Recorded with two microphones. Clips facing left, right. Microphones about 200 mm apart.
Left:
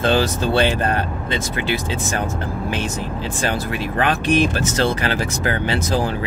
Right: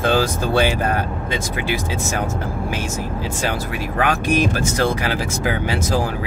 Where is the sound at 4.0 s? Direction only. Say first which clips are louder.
Left 1 dB; 10° right (ahead or behind).